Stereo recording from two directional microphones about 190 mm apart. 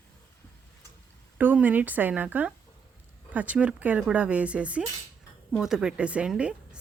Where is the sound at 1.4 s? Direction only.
10° right (ahead or behind).